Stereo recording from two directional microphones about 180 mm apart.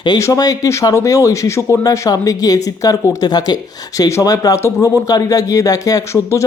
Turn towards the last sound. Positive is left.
turn(degrees=20)  # may be behind; listen again after turning